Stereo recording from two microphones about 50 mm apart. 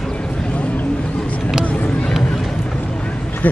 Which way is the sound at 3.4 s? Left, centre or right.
Left.